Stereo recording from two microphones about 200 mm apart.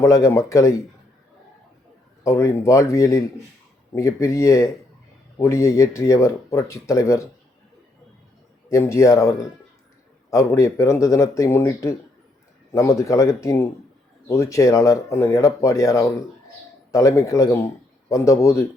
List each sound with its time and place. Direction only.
0.0 s speech: 15° left (ahead or behind)
2.2 s speech: 15° left (ahead or behind)
8.7 s speech: 15° left (ahead or behind)
13.0 s speech: 15° left (ahead or behind)